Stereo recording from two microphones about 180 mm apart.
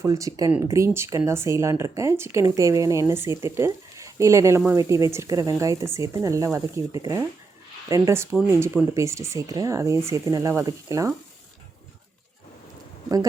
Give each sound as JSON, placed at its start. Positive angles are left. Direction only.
{"t": 0.0, "sound": "speech", "side_deg": -20}